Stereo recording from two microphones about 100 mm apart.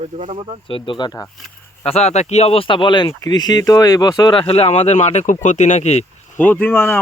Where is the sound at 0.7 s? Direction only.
60° left (ahead or behind).